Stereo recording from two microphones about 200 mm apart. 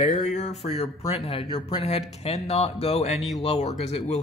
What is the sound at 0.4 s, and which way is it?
Speech, 35° left (ahead or behind).